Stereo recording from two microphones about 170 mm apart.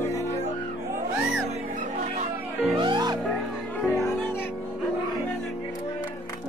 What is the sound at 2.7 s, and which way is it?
Music, 25° right (ahead or behind).